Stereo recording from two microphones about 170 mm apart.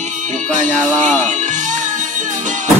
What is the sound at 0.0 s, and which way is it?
Music, 45° right (ahead or behind).